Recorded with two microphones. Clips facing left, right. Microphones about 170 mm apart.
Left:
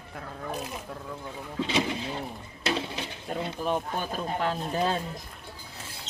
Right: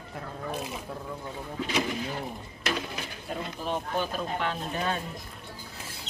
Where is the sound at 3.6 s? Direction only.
45° left (ahead or behind).